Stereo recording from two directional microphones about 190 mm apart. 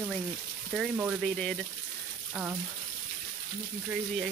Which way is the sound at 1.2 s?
5° left (ahead or behind).